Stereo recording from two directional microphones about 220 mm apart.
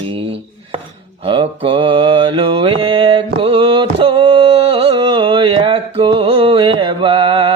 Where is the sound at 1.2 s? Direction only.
25° right (ahead or behind).